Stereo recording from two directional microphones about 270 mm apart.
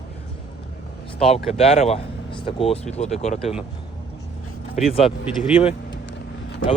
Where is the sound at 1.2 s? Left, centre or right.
Left.